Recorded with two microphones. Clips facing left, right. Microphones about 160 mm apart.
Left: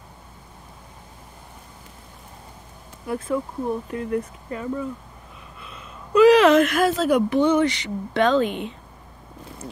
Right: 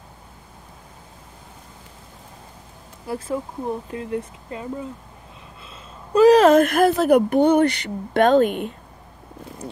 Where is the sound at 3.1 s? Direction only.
30° right (ahead or behind).